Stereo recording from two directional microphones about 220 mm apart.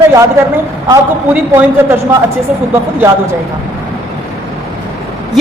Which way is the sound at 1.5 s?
10° right (ahead or behind).